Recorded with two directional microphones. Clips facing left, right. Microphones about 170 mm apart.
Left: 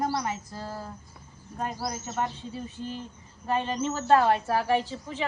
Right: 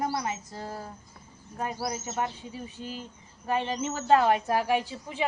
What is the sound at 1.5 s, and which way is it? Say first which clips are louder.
A woman's voice: even; 10° right (ahead or behind).